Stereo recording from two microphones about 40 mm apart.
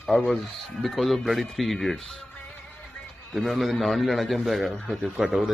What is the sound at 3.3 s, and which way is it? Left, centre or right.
A man's voice, centre.